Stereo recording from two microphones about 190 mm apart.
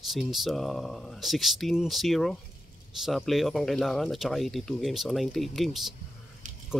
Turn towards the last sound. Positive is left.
turn(degrees=-40)  # may be behind; listen again after turning